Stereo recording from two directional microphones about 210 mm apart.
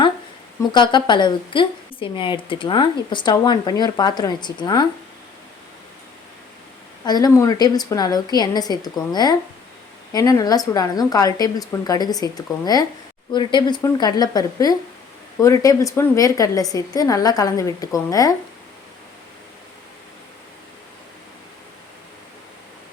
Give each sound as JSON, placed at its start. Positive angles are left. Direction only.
{"t": 0.7, "sound": "a woman's voice", "side_deg": 20}
{"t": 7.0, "sound": "a woman's voice", "side_deg": 20}